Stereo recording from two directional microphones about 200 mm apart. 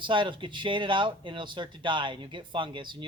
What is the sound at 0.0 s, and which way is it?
Speech, 25° right (ahead or behind).